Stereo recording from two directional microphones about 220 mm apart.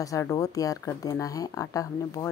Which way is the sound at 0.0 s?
15° left (ahead or behind).